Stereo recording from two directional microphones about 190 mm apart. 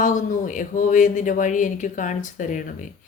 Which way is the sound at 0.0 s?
45° left (ahead or behind).